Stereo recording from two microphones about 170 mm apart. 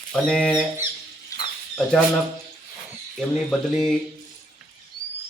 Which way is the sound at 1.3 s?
20° left (ahead or behind).